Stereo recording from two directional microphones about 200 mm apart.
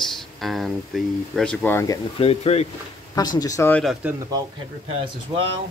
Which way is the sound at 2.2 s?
30° left (ahead or behind).